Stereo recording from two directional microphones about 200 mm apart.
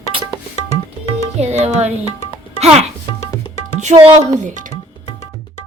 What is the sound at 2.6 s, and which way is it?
Music, 30° right (ahead or behind).